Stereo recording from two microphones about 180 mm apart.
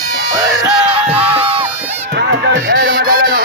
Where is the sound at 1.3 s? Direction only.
30° right (ahead or behind).